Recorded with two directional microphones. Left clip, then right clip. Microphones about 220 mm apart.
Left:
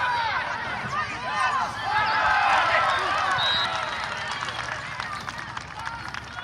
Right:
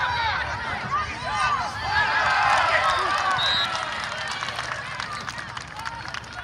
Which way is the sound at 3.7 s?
50° right (ahead or behind).